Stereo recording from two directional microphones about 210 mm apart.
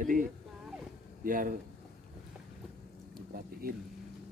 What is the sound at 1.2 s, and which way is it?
Speech, 40° right (ahead or behind).